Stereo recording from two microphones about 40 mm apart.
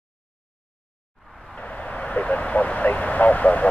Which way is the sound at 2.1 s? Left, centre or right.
Left.